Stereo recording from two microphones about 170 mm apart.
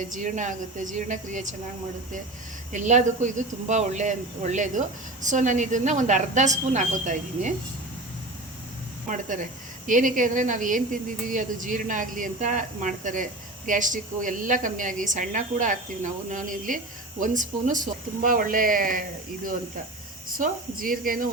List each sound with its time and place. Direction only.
0.1 s a woman's voice: 45° right (ahead or behind)
2.7 s a woman's voice: 45° right (ahead or behind)
9.8 s a woman's voice: 50° right (ahead or behind)
20.2 s speech: 55° right (ahead or behind)